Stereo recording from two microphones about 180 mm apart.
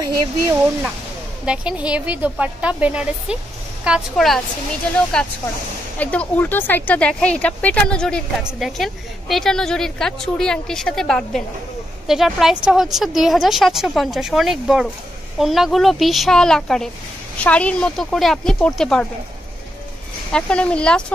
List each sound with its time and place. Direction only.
0.0 s speech: 20° right (ahead or behind)
1.4 s a woman's voice: 5° right (ahead or behind)
20.3 s speech: 5° left (ahead or behind)